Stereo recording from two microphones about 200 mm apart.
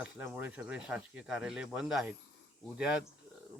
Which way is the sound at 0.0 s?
5° right (ahead or behind).